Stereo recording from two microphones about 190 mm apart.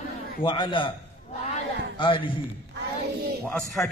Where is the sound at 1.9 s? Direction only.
25° left (ahead or behind).